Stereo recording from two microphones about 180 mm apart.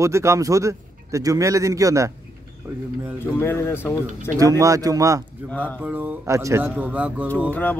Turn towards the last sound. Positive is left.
turn(degrees=10)  # may be behind; listen again after turning